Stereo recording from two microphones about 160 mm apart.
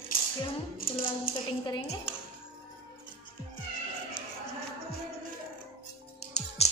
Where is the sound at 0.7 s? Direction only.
60° left (ahead or behind).